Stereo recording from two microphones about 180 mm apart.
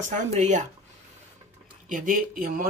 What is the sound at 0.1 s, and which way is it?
Speech, 40° right (ahead or behind).